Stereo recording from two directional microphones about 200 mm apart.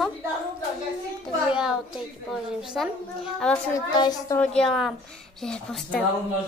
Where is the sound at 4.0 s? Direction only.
20° left (ahead or behind).